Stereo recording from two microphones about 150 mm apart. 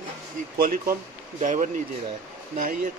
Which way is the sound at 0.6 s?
75° right (ahead or behind).